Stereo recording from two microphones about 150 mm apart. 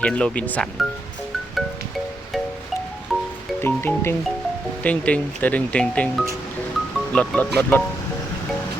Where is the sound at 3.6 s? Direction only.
15° left (ahead or behind).